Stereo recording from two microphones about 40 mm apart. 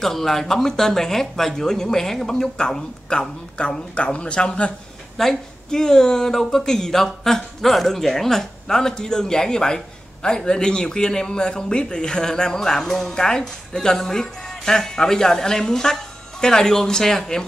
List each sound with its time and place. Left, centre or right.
0.0 s a man's voice: centre; by 4.7 s left
5.1 s a man's voice: centre